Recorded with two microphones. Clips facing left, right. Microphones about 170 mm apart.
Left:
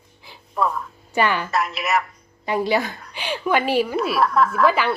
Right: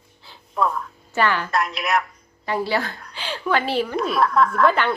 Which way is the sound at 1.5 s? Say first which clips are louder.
Even; centre (ahead or behind).